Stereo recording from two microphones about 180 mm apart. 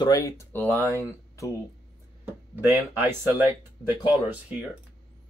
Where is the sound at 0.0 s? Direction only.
20° left (ahead or behind).